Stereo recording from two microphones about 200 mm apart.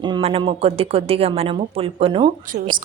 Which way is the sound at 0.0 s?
25° right (ahead or behind).